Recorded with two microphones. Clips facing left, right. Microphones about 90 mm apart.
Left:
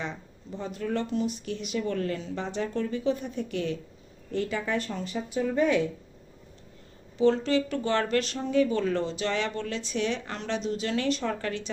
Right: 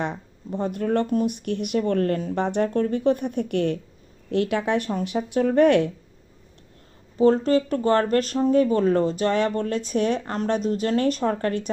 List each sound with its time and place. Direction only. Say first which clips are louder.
0.0 s speech: right 7 dB; 60° right (ahead or behind)
4.3 s speech: right 7 dB; 70° right (ahead or behind)
7.2 s speech: right 5 dB; 40° right (ahead or behind)